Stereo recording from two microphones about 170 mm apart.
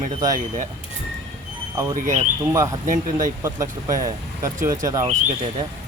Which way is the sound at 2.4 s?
15° right (ahead or behind).